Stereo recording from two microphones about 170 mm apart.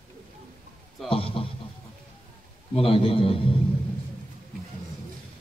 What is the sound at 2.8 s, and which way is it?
Speech, 30° left (ahead or behind).